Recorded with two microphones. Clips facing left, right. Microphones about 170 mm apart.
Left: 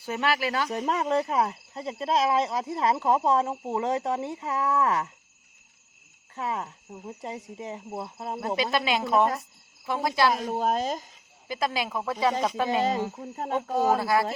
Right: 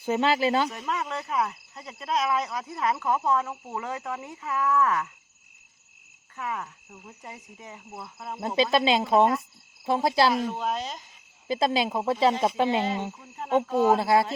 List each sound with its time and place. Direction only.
0.0 s speech: 20° right (ahead or behind)
0.7 s speech: 35° left (ahead or behind)
6.3 s speech: 30° left (ahead or behind)
8.5 s speech: 25° right (ahead or behind)
10.3 s speech: 40° left (ahead or behind)
11.4 s speech: 25° right (ahead or behind)
13.1 s speech: 40° left (ahead or behind)
13.9 s speech: 25° right (ahead or behind)